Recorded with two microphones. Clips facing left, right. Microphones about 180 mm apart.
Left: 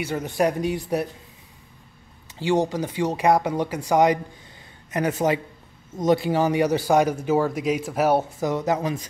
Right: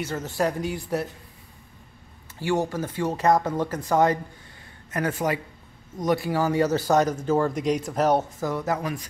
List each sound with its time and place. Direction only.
0.0 s speech: 15° left (ahead or behind)
2.3 s speech: 20° left (ahead or behind)